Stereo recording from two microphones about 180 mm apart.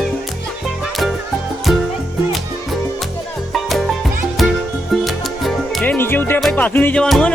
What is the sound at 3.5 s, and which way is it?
Music, centre (ahead or behind).